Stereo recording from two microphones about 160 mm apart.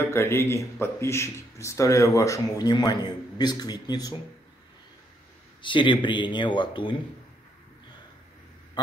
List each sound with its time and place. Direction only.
0.0 s speech: 15° left (ahead or behind)
5.6 s speech: 30° left (ahead or behind)